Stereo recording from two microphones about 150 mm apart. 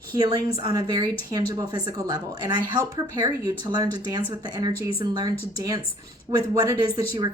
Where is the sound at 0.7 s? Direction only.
25° right (ahead or behind).